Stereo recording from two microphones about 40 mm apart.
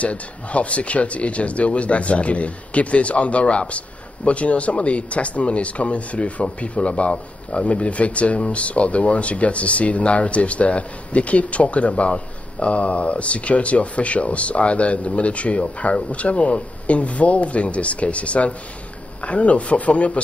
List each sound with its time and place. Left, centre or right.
0.0 s speech: left